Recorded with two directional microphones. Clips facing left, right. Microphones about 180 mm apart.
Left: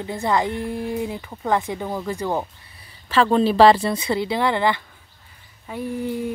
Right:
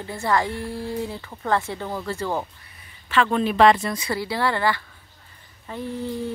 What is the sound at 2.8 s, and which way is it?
Speech, 35° left (ahead or behind).